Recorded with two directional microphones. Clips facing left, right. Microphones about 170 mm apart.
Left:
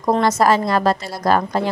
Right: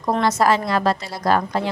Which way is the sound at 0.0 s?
40° left (ahead or behind).